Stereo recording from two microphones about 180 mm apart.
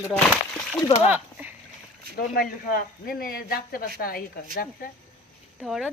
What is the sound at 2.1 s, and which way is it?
Speech, 55° left (ahead or behind).